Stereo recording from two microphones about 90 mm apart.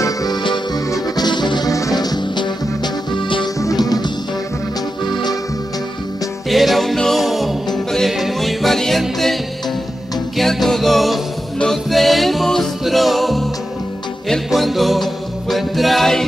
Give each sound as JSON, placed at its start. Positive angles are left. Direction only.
{"t": 0.0, "sound": "music", "side_deg": 40}
{"t": 1.7, "sound": "music", "side_deg": 40}
{"t": 3.6, "sound": "music", "side_deg": 45}
{"t": 5.0, "sound": "music", "side_deg": 55}
{"t": 6.5, "sound": "music", "side_deg": 0}